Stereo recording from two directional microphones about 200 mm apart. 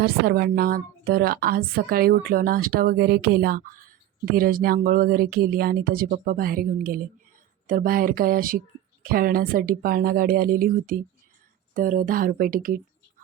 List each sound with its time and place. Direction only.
0.0 s a woman's voice: 50° right (ahead or behind)